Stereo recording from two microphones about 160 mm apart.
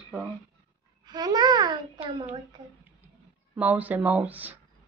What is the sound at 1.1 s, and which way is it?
A child's voice, 25° right (ahead or behind).